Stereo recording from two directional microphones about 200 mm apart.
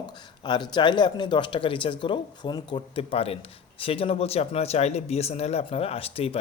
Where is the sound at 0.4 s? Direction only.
20° left (ahead or behind).